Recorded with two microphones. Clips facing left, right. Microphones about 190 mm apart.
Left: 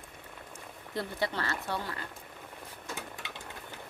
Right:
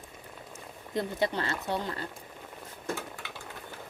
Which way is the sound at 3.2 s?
20° left (ahead or behind).